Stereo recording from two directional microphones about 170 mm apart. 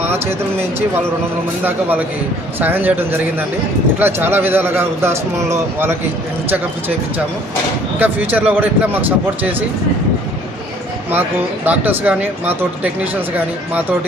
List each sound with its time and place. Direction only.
0.0 s a sound: 10° right (ahead or behind)
1.6 s speech: 10° right (ahead or behind)
7.9 s speech: 10° right (ahead or behind)
11.1 s speech: 10° right (ahead or behind)